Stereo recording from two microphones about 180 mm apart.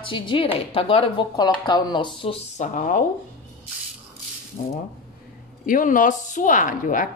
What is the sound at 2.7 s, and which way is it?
Speech, 45° left (ahead or behind).